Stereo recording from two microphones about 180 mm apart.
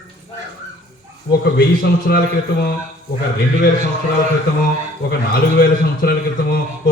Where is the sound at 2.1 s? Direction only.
60° left (ahead or behind).